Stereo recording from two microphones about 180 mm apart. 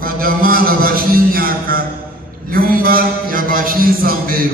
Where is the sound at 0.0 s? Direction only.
55° right (ahead or behind).